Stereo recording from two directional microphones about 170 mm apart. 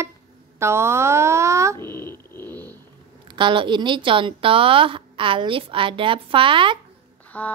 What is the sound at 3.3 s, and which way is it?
Speech, 30° right (ahead or behind).